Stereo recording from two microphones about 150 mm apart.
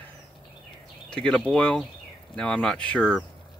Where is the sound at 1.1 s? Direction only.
5° left (ahead or behind).